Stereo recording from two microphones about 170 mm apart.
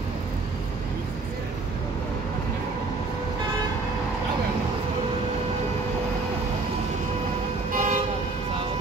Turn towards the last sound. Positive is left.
turn(degrees=-45)  # may be behind; listen again after turning